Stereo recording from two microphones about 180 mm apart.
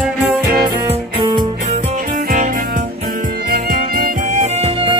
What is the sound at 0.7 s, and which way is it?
Music, 25° right (ahead or behind).